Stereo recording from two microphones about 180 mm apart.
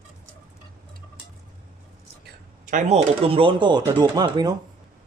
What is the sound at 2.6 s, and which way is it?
Speech, 45° right (ahead or behind).